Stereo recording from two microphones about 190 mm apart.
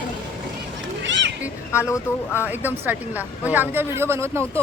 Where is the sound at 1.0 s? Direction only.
75° right (ahead or behind).